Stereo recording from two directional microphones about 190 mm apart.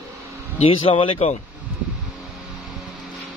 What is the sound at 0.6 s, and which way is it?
Speech, 30° left (ahead or behind).